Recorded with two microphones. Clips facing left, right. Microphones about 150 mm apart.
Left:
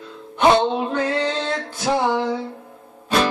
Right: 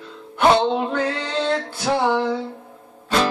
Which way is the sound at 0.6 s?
5° left (ahead or behind).